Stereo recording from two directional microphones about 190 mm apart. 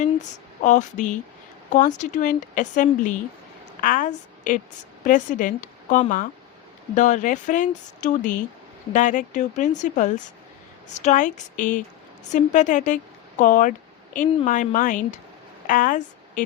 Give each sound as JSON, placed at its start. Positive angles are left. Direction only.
{"t": 0.0, "sound": "a woman's voice", "side_deg": 40}